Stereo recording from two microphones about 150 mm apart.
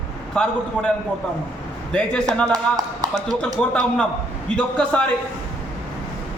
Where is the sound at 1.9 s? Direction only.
5° left (ahead or behind).